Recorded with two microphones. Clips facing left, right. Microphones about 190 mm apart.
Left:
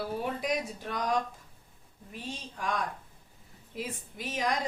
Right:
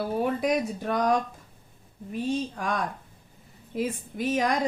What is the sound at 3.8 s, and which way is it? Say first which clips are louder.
Speech: right 9 dB; 50° right (ahead or behind).